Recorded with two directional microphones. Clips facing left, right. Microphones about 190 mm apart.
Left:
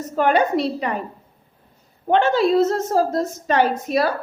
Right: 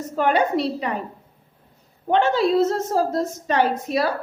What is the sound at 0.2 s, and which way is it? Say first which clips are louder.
Speech: left 2 dB; 60° left (ahead or behind).